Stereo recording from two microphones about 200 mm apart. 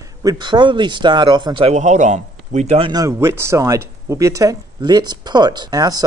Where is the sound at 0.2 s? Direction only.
20° right (ahead or behind).